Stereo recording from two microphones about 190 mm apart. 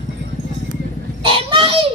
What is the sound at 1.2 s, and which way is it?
Honk, 30° right (ahead or behind).